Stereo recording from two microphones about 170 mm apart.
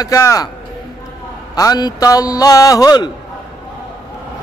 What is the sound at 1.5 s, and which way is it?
Music, 25° left (ahead or behind).